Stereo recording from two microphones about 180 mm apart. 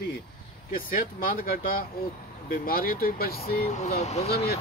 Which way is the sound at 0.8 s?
50° left (ahead or behind).